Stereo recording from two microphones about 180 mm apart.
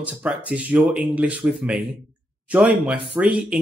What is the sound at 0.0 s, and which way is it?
Speech, 5° right (ahead or behind).